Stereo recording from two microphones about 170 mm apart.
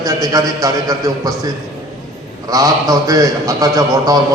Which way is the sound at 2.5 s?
20° right (ahead or behind).